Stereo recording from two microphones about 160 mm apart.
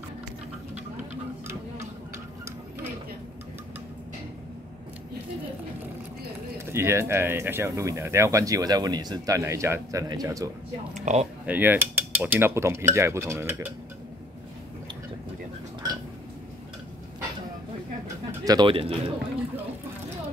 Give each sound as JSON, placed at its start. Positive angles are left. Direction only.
{"t": 6.6, "sound": "speech", "side_deg": -15}
{"t": 11.1, "sound": "speech", "side_deg": -45}
{"t": 11.4, "sound": "cutlery", "side_deg": -10}
{"t": 18.0, "sound": "bird", "side_deg": -25}